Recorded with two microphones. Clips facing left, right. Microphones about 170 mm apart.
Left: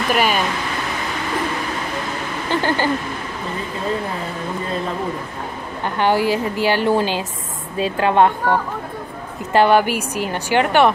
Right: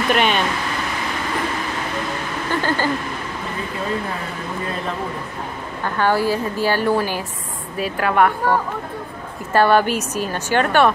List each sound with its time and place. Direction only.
0.1 s speech: 5° left (ahead or behind)
2.5 s a sound: 20° left (ahead or behind)
5.9 s a woman's voice: 20° left (ahead or behind)